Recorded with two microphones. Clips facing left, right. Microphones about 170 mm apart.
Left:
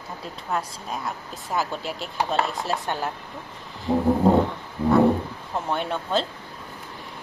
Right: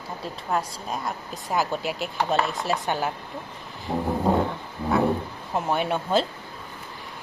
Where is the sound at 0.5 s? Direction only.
Centre (ahead or behind).